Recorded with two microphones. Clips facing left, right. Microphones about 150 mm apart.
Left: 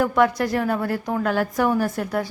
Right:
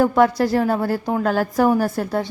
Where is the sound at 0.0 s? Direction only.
30° right (ahead or behind).